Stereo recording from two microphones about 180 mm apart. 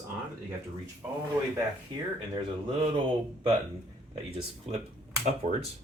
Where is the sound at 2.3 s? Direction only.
30° right (ahead or behind).